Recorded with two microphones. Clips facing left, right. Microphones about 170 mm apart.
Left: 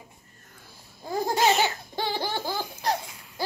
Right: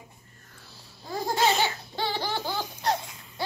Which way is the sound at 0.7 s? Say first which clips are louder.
Left 4 dB; 50° left (ahead or behind).